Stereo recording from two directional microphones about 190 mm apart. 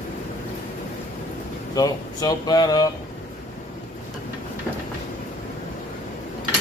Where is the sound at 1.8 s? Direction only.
20° left (ahead or behind).